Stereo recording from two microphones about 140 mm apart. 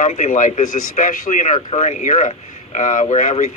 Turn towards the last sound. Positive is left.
turn(degrees=60)  # may be behind; listen again after turning